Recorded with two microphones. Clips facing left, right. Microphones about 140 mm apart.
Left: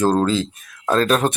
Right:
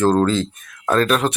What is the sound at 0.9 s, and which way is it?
Speech, 35° left (ahead or behind).